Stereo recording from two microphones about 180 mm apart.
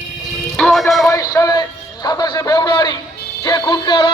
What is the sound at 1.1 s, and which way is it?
A man's voice, 20° left (ahead or behind).